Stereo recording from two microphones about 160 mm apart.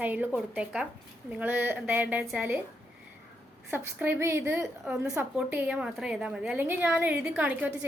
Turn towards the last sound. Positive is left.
turn(degrees=-10)  # may be behind; listen again after turning